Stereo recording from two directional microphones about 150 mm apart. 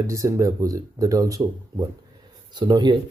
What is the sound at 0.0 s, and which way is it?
Speech, 20° right (ahead or behind).